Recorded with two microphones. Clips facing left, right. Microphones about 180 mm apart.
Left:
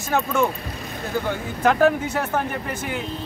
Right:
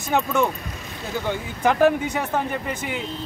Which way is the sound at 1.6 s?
15° right (ahead or behind).